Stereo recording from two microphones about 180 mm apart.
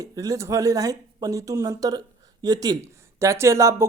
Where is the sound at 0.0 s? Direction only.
20° right (ahead or behind).